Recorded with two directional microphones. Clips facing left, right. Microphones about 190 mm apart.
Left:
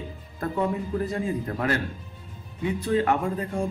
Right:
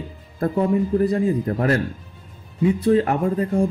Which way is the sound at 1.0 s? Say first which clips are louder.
Right 8 dB; 35° right (ahead or behind).